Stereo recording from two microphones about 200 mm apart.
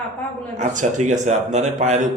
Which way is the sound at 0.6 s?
35° right (ahead or behind).